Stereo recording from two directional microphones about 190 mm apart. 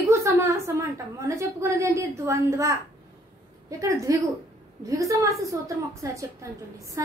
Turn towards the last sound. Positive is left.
turn(degrees=-15)  # may be behind; listen again after turning